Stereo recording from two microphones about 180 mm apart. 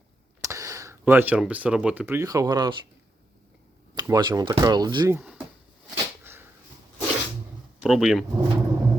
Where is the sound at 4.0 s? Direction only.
20° right (ahead or behind).